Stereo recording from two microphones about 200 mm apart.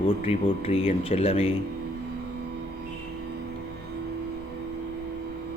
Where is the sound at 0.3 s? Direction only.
30° left (ahead or behind).